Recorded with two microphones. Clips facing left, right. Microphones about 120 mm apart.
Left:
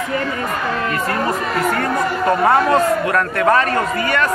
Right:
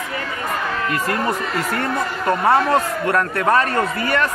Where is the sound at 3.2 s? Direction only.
20° right (ahead or behind).